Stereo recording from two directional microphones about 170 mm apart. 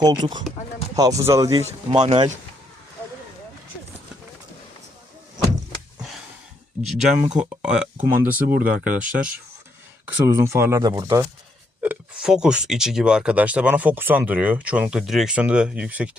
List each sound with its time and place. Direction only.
0.0 s speech: 25° right (ahead or behind)
6.8 s speech: 5° right (ahead or behind)
8.3 s speech: 60° right (ahead or behind)
8.8 s speech: 10° right (ahead or behind)